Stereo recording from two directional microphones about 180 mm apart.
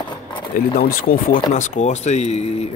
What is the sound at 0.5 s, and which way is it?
Speech, 55° left (ahead or behind).